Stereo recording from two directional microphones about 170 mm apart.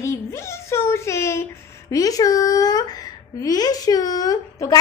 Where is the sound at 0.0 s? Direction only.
15° left (ahead or behind).